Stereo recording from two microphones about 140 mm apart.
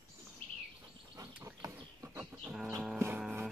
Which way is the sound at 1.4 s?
20° right (ahead or behind).